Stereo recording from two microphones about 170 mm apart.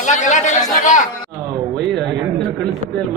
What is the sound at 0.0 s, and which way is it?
Speech, 45° left (ahead or behind).